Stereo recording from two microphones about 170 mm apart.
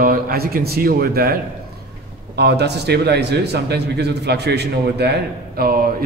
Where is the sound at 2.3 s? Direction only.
80° right.